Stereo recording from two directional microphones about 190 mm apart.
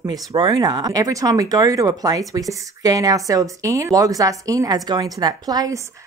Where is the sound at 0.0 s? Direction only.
20° right (ahead or behind).